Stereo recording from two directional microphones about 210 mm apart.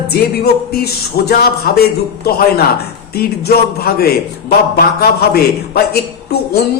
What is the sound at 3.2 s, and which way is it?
A woman's voice, 45° left (ahead or behind).